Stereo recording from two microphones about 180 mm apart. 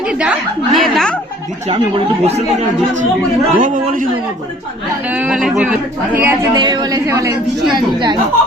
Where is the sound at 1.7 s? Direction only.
35° right (ahead or behind).